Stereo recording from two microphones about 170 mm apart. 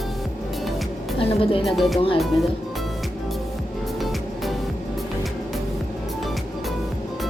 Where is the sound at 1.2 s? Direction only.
35° left (ahead or behind).